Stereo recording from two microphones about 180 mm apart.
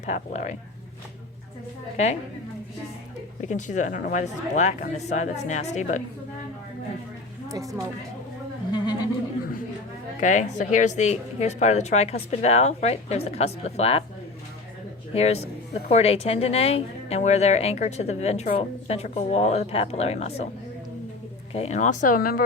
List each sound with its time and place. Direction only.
0.0 s speech: 40° left (ahead or behind)
2.0 s speech: 40° left (ahead or behind)
3.4 s speech: 40° left (ahead or behind)
7.4 s a sound: 20° right (ahead or behind)
8.7 s a sound: 25° left (ahead or behind)
10.2 s speech: 45° left (ahead or behind)
15.1 s speech: 35° left (ahead or behind)
21.5 s speech: 35° left (ahead or behind); by 22.4 s 50° left (ahead or behind)